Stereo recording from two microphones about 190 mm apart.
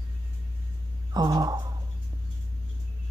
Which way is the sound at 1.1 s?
20° right (ahead or behind).